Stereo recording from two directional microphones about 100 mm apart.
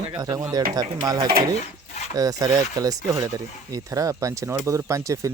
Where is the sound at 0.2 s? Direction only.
35° right (ahead or behind).